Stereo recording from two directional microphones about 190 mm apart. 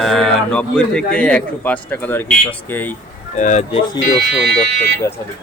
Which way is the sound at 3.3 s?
40° left (ahead or behind).